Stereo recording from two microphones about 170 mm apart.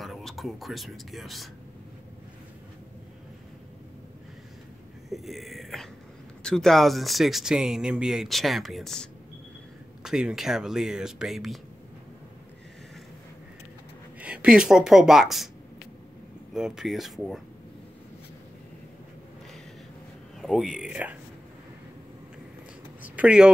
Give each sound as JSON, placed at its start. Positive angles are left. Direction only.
{"t": 0.0, "sound": "speech", "side_deg": 0}
{"t": 5.1, "sound": "speech", "side_deg": 0}
{"t": 14.2, "sound": "speech", "side_deg": -5}
{"t": 16.5, "sound": "speech", "side_deg": -5}
{"t": 20.3, "sound": "speech", "side_deg": 0}
{"t": 23.0, "sound": "a sound", "side_deg": -10}